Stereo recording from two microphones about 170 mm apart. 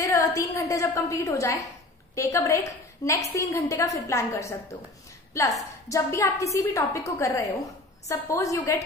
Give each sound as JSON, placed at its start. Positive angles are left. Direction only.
{"t": 0.0, "sound": "a woman's voice", "side_deg": 20}